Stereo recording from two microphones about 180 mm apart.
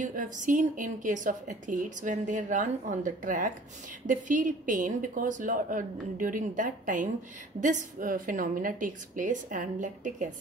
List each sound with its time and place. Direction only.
0.0 s a woman's voice: 45° right (ahead or behind)